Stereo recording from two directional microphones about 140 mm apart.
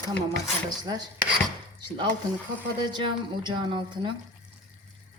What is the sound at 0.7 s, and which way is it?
Speech, 30° right (ahead or behind).